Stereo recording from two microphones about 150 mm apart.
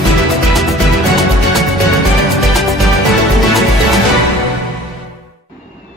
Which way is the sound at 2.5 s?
Centre (ahead or behind).